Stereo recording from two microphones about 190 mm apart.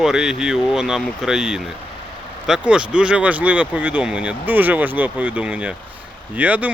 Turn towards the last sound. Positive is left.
turn(degrees=-10)  # may be behind; listen again after turning